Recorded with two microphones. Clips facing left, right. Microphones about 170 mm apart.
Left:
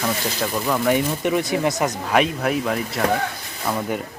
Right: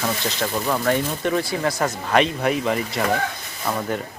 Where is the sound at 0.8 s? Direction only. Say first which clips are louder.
Left 2 dB; 15° left (ahead or behind).